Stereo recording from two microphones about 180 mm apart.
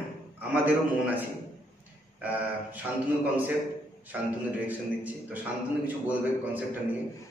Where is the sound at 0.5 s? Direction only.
10° right (ahead or behind).